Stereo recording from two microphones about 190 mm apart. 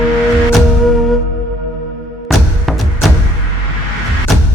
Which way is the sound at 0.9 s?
Centre (ahead or behind).